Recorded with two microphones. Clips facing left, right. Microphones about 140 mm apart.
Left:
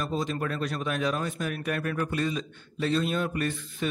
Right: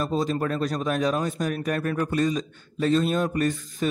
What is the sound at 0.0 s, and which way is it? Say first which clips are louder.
A man's voice: right 5 dB; 40° right (ahead or behind).